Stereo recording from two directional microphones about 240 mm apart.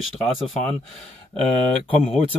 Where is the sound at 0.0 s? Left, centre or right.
Centre.